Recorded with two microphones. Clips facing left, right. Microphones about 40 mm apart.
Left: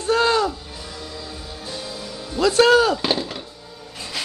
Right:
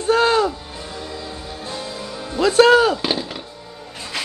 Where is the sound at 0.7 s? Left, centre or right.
Right.